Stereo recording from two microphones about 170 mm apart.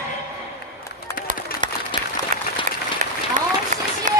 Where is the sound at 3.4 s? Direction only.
50° right (ahead or behind).